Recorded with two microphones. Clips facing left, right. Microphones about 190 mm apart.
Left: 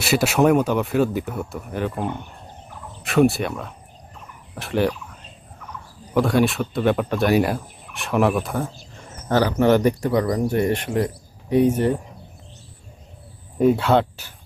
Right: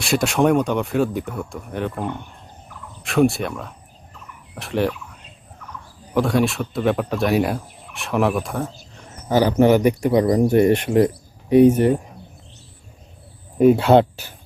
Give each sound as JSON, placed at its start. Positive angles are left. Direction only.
{"t": 0.0, "sound": "turkey", "side_deg": 5}
{"t": 6.1, "sound": "turkey", "side_deg": 0}
{"t": 9.3, "sound": "speech", "side_deg": -15}
{"t": 13.6, "sound": "speech", "side_deg": -15}